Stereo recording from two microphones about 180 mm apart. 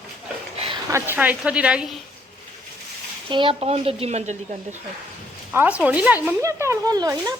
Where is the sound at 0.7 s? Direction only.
15° right (ahead or behind).